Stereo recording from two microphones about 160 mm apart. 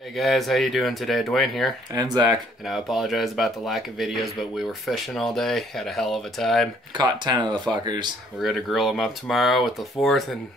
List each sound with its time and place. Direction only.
0.1 s speech: centre (ahead or behind)
2.0 s speech: 25° right (ahead or behind)
2.7 s speech: centre (ahead or behind)
7.0 s speech: 25° right (ahead or behind)
8.4 s speech: centre (ahead or behind)